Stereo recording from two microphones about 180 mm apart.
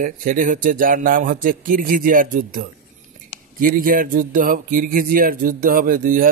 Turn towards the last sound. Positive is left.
turn(degrees=-50)  # may be behind; listen again after turning